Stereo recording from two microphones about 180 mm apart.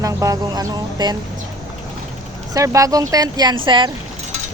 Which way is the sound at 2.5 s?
20° right (ahead or behind).